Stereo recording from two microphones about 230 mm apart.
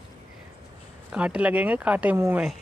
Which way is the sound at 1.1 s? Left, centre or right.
Centre.